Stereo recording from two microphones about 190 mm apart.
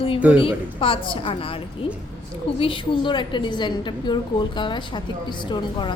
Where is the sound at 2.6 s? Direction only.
25° left (ahead or behind).